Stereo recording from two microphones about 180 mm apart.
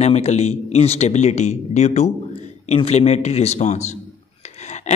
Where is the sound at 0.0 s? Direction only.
40° left (ahead or behind).